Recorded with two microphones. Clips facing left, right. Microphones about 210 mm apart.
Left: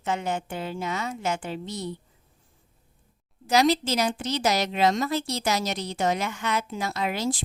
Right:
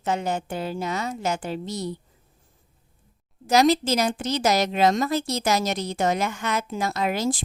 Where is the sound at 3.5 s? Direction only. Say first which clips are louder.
Right 3 dB; 45° right (ahead or behind).